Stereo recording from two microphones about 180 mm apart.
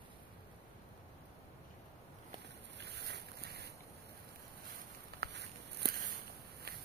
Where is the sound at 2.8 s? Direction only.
70° right (ahead or behind).